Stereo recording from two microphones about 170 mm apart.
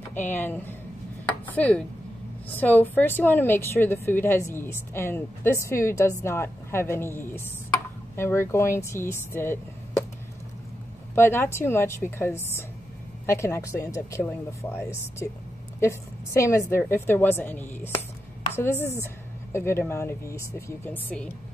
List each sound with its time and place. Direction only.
0.1 s a woman's voice: 10° left (ahead or behind)
11.1 s a woman's voice: 15° left (ahead or behind)
15.8 s a woman's voice: 15° left (ahead or behind)